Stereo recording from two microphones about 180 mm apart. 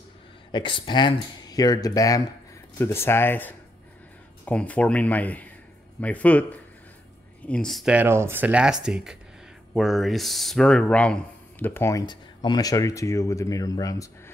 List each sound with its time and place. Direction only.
0.5 s speech: 25° left (ahead or behind)